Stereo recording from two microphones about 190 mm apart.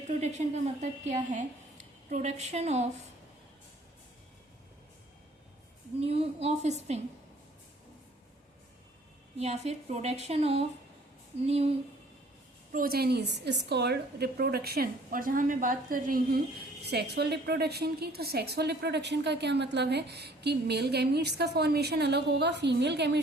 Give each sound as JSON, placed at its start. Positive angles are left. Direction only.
{"t": 0.1, "sound": "a woman's voice", "side_deg": -35}
{"t": 6.1, "sound": "speech", "side_deg": -35}
{"t": 9.4, "sound": "speech", "side_deg": -35}
{"t": 12.7, "sound": "a woman's voice", "side_deg": -50}
{"t": 16.8, "sound": "a woman's voice", "side_deg": -60}